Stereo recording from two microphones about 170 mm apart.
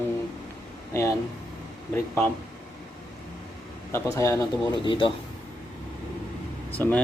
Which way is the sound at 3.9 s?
15° left (ahead or behind).